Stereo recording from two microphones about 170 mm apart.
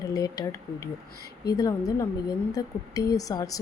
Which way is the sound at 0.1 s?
20° left (ahead or behind).